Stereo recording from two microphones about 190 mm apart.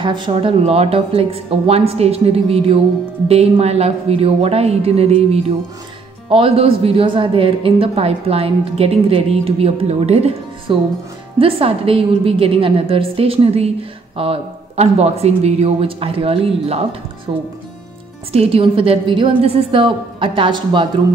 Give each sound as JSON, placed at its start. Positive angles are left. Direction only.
{"t": 0.0, "sound": "a woman's voice", "side_deg": -25}